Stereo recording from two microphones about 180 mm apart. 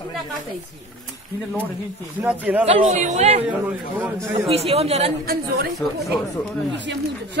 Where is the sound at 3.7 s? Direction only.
10° right (ahead or behind).